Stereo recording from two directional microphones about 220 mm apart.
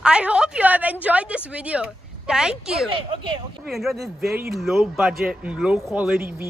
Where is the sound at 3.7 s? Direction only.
Centre (ahead or behind).